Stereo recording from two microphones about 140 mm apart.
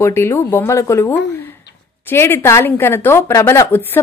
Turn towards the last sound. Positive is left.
turn(degrees=15)  # may be behind; listen again after turning